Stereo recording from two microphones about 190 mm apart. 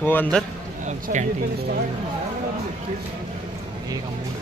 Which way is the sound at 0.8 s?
40° right (ahead or behind).